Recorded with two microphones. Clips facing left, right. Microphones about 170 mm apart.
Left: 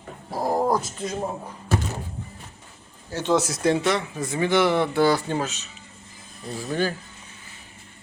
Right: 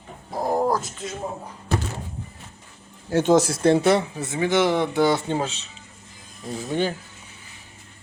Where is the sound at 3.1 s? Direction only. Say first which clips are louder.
Right 5 dB; 50° right (ahead or behind).